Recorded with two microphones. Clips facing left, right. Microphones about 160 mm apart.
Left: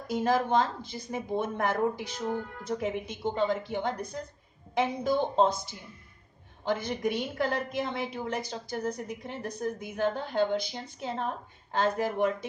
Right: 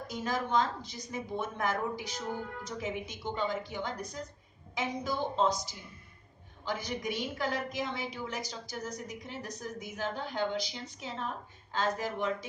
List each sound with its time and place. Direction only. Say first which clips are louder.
0.1 s a woman's voice: left 6 dB; 60° left (ahead or behind)